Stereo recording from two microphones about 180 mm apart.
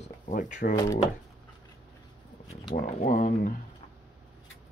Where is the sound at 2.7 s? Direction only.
45° left (ahead or behind).